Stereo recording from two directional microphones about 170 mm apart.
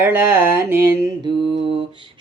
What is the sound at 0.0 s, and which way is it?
Mantra, 10° right (ahead or behind).